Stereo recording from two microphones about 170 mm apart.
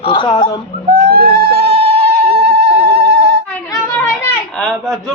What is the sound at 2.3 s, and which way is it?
Music, 75° right (ahead or behind).